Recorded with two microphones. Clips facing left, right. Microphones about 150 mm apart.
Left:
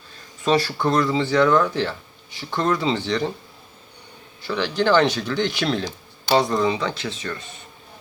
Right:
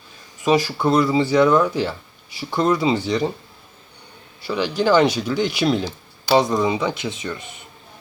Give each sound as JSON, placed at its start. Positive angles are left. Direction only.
{"t": 0.4, "sound": "speech", "side_deg": -10}
{"t": 4.4, "sound": "speech", "side_deg": -10}